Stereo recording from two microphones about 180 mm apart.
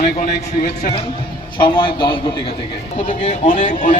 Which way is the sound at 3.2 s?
45° left (ahead or behind).